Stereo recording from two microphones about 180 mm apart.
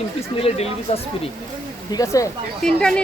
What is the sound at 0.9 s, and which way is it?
Speech, 35° left (ahead or behind).